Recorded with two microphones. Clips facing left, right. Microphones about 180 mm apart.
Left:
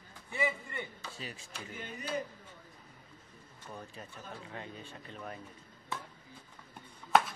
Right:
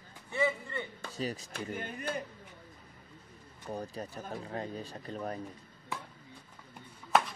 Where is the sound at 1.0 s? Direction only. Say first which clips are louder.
Right 8 dB; 40° right (ahead or behind).